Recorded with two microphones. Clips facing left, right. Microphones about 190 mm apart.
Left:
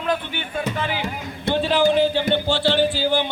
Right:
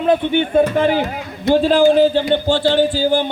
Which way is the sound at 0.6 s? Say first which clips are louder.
Right 9 dB; 45° right (ahead or behind).